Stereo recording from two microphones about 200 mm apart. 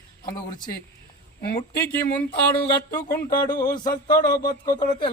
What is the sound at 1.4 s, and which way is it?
Speech, 50° left (ahead or behind).